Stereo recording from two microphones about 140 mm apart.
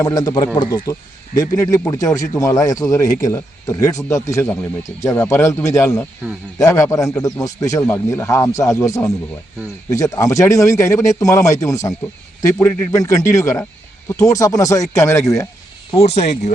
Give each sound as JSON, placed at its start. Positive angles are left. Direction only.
{"t": 0.0, "sound": "a man's voice", "side_deg": 25}
{"t": 16.0, "sound": "speech", "side_deg": 45}